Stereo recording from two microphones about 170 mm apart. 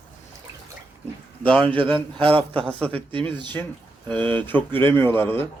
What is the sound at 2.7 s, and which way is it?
Speech, 5° left (ahead or behind).